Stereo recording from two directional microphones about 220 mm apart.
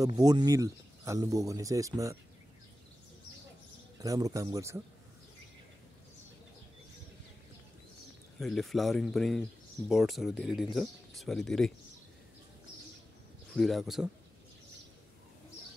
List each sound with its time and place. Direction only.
0.0 s speech: 15° right (ahead or behind)
4.0 s speech: 15° right (ahead or behind)
8.4 s speech: centre (ahead or behind)
13.5 s speech: centre (ahead or behind)